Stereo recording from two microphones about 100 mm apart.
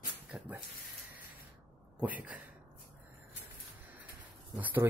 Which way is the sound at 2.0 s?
15° right (ahead or behind).